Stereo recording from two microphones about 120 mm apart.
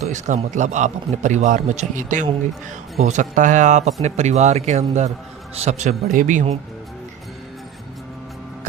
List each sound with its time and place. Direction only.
0.0 s a man's voice: 75° right (ahead or behind)
4.0 s a man's voice: 70° right (ahead or behind)